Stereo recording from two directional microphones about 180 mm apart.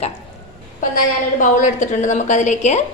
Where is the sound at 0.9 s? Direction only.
45° left (ahead or behind).